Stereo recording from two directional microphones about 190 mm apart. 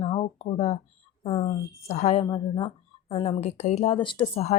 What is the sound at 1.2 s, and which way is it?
A woman's voice, 30° left (ahead or behind).